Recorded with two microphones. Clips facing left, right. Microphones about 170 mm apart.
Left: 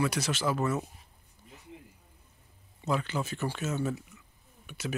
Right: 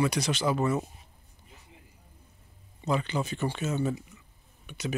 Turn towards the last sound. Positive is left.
turn(degrees=5)  # may be behind; listen again after turning